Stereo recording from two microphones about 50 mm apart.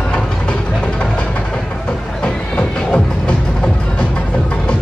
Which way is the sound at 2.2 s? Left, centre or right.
Centre.